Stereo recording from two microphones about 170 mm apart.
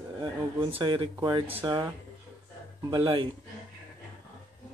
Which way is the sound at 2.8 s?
30° right (ahead or behind).